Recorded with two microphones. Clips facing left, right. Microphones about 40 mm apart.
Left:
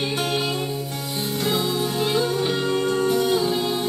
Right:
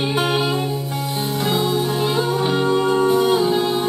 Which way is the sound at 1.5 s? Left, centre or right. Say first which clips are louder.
Right 4 dB; centre.